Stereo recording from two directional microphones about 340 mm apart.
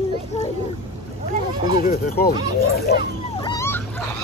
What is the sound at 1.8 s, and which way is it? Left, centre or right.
Speech, left.